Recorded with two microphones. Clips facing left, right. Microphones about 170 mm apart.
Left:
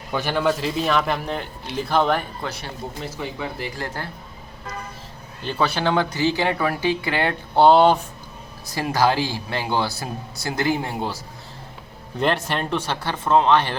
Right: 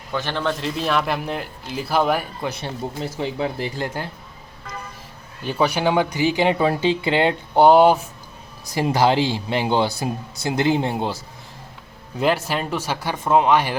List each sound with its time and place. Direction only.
0.1 s a man's voice: 10° left (ahead or behind); by 2.5 s 10° right (ahead or behind)
3.2 s speech: 30° right (ahead or behind)
5.4 s speech: 15° right (ahead or behind)
12.2 s speech: 5° right (ahead or behind)